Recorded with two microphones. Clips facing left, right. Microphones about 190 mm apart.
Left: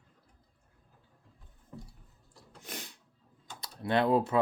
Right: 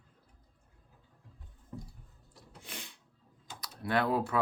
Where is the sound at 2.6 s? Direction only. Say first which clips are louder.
Left 3 dB; 40° left (ahead or behind).